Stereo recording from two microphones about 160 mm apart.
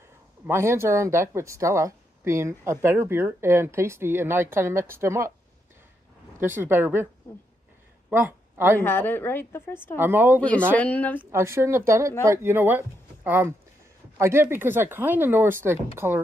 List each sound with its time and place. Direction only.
0.5 s speech: 15° right (ahead or behind)
6.3 s speech: 15° right (ahead or behind)
8.1 s speech: 15° right (ahead or behind)
8.7 s a woman's voice: 15° left (ahead or behind)
9.9 s speech: 15° right (ahead or behind)
10.8 s a woman's voice: 10° left (ahead or behind)
11.3 s speech: 15° right (ahead or behind)